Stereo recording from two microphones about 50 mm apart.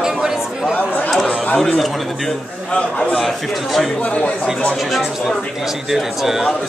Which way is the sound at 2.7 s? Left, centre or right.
Left.